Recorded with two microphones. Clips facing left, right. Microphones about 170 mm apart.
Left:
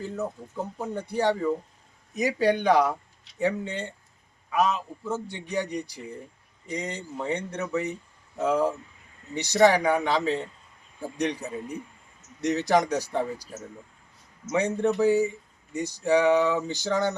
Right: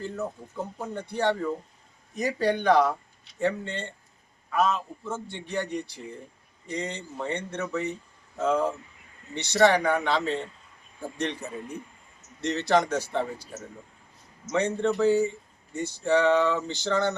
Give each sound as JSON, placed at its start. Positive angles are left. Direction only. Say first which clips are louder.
{"t": 0.0, "sound": "speech", "louder": "left 1 dB", "side_deg": 20}